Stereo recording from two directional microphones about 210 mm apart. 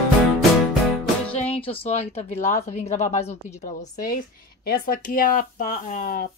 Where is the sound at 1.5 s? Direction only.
25° left (ahead or behind).